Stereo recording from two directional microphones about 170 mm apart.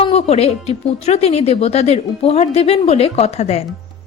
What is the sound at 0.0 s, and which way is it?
A woman's voice, 35° left (ahead or behind).